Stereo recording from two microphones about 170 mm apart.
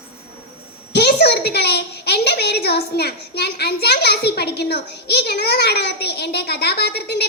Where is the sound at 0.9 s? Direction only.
70° left (ahead or behind).